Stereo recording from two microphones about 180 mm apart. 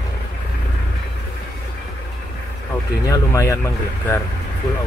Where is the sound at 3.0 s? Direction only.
15° left (ahead or behind).